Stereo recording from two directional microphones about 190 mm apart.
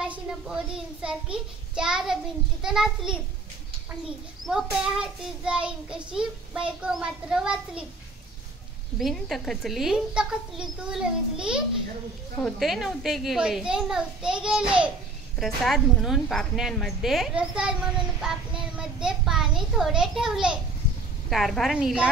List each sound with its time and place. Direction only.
0.0 s a child's voice: 5° right (ahead or behind)
4.5 s a woman's voice: 5° right (ahead or behind)
8.9 s a woman's voice: centre (ahead or behind)